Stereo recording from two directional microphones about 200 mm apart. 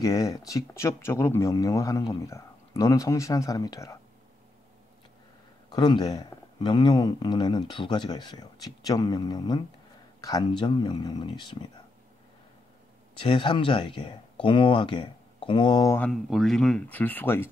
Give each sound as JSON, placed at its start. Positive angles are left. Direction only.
{"t": 0.0, "sound": "speech", "side_deg": 15}
{"t": 5.7, "sound": "speech", "side_deg": 20}
{"t": 13.2, "sound": "speech", "side_deg": 25}
{"t": 16.0, "sound": "speech", "side_deg": 0}